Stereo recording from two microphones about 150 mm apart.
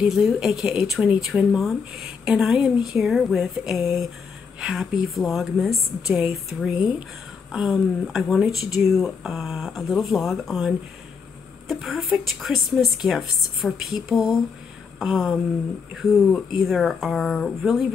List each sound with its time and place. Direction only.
0.0 s speech: 5° right (ahead or behind)